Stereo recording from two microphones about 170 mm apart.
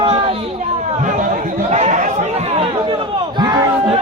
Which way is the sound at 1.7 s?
45° right (ahead or behind).